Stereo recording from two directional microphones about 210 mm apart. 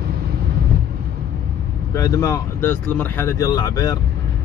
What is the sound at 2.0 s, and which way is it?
Speech, 15° left (ahead or behind).